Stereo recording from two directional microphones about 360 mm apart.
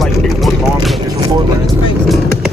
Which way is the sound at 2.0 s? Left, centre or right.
Centre.